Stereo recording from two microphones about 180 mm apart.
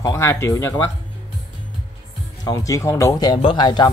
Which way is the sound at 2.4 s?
20° left (ahead or behind).